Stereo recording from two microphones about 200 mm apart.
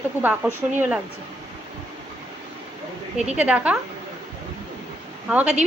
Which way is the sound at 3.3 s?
5° right (ahead or behind).